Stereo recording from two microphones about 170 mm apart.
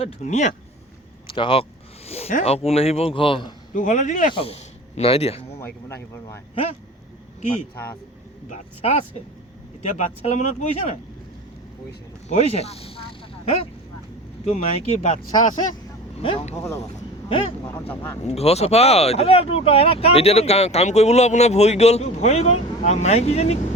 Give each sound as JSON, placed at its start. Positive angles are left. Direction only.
{"t": 0.0, "sound": "speech", "side_deg": 40}
{"t": 1.3, "sound": "speech", "side_deg": 30}
{"t": 2.0, "sound": "a sound", "side_deg": 35}
{"t": 2.4, "sound": "speech", "side_deg": 35}
{"t": 3.8, "sound": "speech", "side_deg": 45}
{"t": 4.4, "sound": "a man's voice", "side_deg": 35}
{"t": 5.5, "sound": "speech", "side_deg": 15}
{"t": 8.4, "sound": "speech", "side_deg": 40}
{"t": 10.0, "sound": "speech", "side_deg": 45}
{"t": 12.3, "sound": "speech", "side_deg": 40}
{"t": 14.4, "sound": "speech", "side_deg": 40}
{"t": 15.3, "sound": "speech", "side_deg": 25}
{"t": 16.6, "sound": "speech", "side_deg": 15}
{"t": 17.2, "sound": "speech", "side_deg": 35}